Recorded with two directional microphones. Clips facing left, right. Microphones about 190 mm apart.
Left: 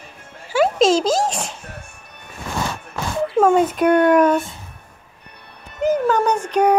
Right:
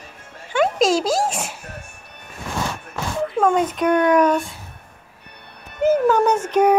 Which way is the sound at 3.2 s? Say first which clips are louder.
Left 3 dB; 5° left (ahead or behind).